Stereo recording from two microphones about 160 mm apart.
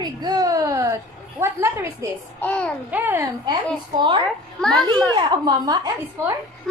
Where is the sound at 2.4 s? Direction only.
10° left (ahead or behind).